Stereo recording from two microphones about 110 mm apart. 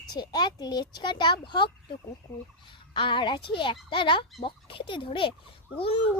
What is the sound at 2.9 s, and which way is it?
A child's voice, 45° left (ahead or behind).